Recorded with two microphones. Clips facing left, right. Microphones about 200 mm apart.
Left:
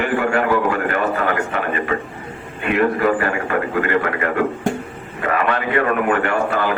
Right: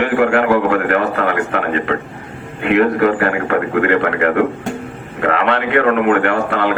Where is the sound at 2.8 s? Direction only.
65° right (ahead or behind).